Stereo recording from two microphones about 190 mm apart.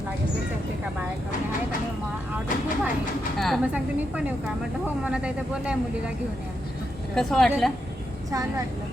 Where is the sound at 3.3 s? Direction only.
Centre (ahead or behind).